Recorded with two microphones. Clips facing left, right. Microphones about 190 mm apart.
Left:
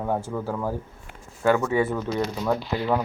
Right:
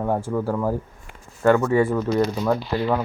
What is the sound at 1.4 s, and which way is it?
Speech, 5° left (ahead or behind).